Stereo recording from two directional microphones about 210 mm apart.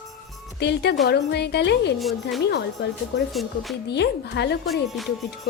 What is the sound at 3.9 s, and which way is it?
Speech, 55° left (ahead or behind).